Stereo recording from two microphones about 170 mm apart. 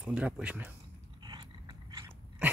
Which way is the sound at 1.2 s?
25° right (ahead or behind).